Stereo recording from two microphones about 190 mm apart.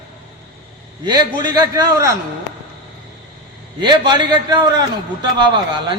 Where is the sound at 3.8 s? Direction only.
25° right (ahead or behind).